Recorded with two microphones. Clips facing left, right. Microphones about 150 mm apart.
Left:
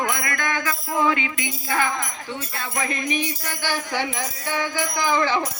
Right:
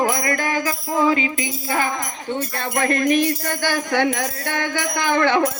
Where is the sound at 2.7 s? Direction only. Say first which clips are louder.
Right 8 dB; 60° right (ahead or behind).